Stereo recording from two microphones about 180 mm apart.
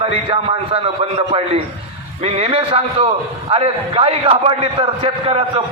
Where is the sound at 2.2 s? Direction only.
35° right (ahead or behind).